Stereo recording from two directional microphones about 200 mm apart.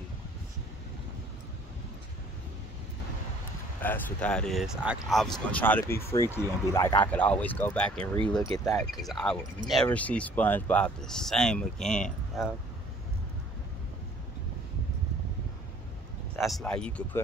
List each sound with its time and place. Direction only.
3.8 s speech: 5° left (ahead or behind)
16.3 s speech: centre (ahead or behind)